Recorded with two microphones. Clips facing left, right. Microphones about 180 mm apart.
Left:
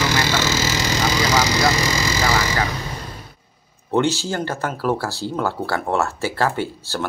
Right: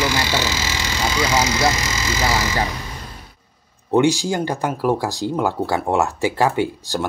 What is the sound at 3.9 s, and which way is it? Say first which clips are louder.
Speech: right 3 dB; 15° right (ahead or behind).